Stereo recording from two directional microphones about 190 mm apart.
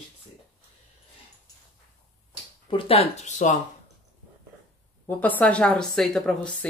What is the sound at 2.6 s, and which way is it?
Speech, 30° left (ahead or behind).